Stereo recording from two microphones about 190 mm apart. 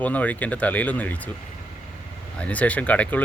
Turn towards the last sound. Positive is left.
turn(degrees=10)  # may be behind; listen again after turning